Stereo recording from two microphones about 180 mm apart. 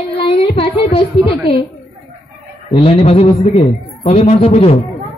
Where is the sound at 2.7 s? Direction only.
30° left (ahead or behind).